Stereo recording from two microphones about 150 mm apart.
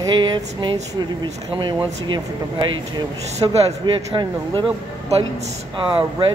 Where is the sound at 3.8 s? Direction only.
30° right (ahead or behind).